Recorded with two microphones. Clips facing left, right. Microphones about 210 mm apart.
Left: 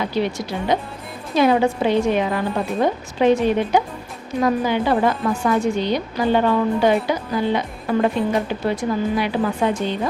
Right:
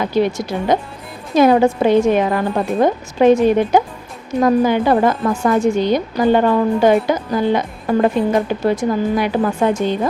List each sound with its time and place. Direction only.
0.0 s a woman's voice: 45° right (ahead or behind)